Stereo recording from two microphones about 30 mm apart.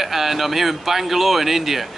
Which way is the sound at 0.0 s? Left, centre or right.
Centre.